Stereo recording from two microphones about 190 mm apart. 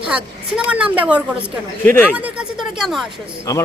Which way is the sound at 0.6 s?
5° right (ahead or behind).